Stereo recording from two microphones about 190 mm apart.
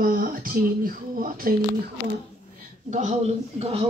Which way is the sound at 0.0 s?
50° right (ahead or behind).